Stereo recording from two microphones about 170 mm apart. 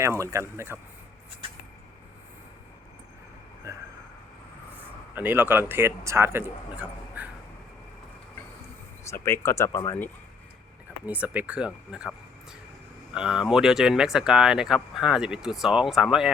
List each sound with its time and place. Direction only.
0.0 s speech: 15° right (ahead or behind)
3.7 s a sound: 15° right (ahead or behind)
5.1 s speech: 10° right (ahead or behind)
9.0 s speech: 15° left (ahead or behind)
11.1 s speech: 10° right (ahead or behind)